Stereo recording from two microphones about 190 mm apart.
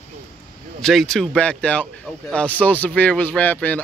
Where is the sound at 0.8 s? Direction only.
Centre (ahead or behind).